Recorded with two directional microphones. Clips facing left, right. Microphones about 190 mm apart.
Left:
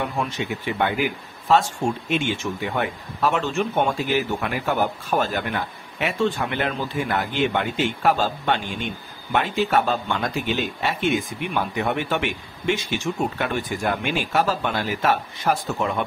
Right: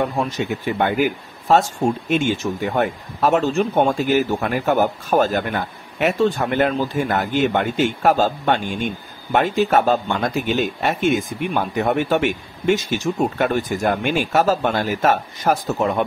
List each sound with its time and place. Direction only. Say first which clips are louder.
0.0 s speech: right 5 dB; 40° right (ahead or behind)